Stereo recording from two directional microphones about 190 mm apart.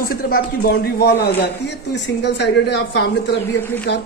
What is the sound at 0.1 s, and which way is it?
A man's voice, 50° left (ahead or behind).